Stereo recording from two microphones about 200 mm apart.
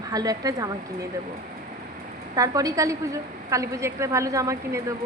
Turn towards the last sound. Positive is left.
turn(degrees=-15)  # may be behind; listen again after turning